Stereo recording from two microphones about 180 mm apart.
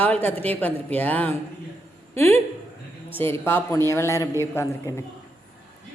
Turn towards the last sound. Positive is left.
turn(degrees=15)  # may be behind; listen again after turning